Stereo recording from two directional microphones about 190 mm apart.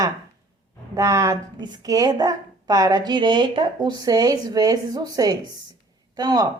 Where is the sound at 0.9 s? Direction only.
15° right (ahead or behind).